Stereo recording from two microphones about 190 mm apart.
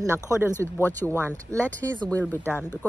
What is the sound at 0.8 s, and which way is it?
Speech, 10° left (ahead or behind).